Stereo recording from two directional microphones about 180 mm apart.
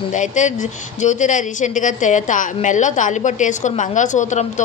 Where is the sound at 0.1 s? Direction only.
45° left (ahead or behind).